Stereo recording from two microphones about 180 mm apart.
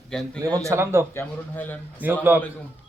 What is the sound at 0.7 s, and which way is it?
Speech, 15° right (ahead or behind).